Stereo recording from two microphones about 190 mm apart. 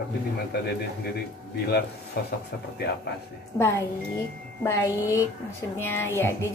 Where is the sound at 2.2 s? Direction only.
60° left (ahead or behind).